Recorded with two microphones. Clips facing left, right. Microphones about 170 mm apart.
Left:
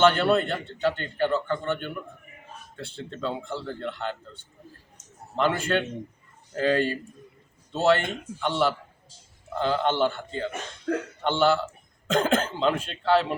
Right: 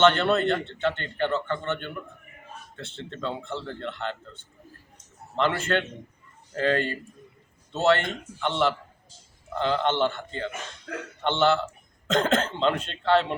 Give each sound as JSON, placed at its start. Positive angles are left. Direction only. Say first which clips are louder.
{"t": 0.0, "sound": "speech", "louder": "even", "side_deg": 10}
{"t": 5.4, "sound": "speech", "louder": "left 1 dB", "side_deg": 15}